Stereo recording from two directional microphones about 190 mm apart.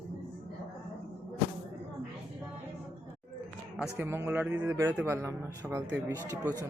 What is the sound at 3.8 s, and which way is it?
Speech, 10° right (ahead or behind).